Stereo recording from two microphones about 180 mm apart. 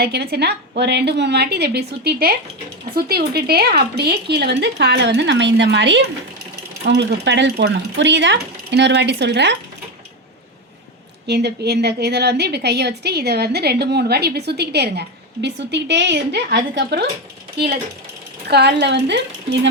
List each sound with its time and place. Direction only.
0.0 s a woman's voice: 60° right (ahead or behind)
11.3 s a woman's voice: 65° right (ahead or behind)
18.4 s a woman's voice: 65° right (ahead or behind)